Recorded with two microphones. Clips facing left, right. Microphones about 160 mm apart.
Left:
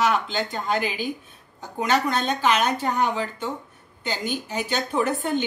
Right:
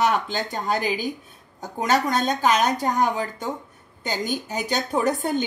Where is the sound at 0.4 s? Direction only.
40° right (ahead or behind).